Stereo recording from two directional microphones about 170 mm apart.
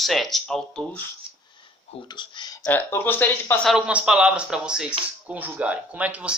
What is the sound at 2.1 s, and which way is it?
Speech, 25° left (ahead or behind).